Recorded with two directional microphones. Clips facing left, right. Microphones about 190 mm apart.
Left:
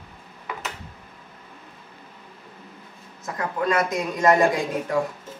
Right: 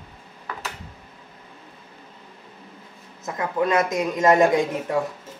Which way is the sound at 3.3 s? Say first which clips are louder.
Right 2 dB; 20° right (ahead or behind).